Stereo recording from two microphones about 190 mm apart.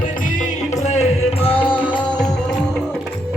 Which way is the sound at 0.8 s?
35° left (ahead or behind).